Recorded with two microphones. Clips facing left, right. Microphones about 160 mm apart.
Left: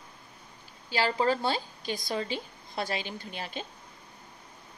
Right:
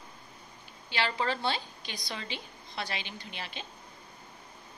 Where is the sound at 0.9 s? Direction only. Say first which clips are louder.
Left 5 dB; 40° left (ahead or behind).